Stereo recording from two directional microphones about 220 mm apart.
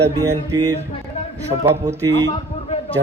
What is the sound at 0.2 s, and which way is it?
Speech, 15° right (ahead or behind).